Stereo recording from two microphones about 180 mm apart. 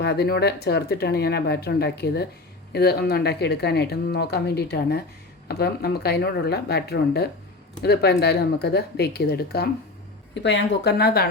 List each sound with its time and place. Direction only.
0.0 s speech: 65° left (ahead or behind)
10.3 s speech: 75° left (ahead or behind); by 11.3 s 60° left (ahead or behind)